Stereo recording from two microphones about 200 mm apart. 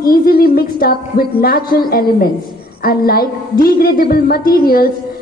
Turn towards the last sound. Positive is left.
turn(degrees=50)  # may be behind; listen again after turning